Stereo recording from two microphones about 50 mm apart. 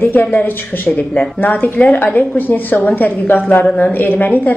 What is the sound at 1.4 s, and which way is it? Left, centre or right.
Speech, left.